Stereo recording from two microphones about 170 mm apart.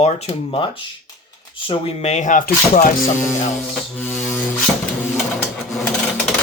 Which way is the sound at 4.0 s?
10° left (ahead or behind).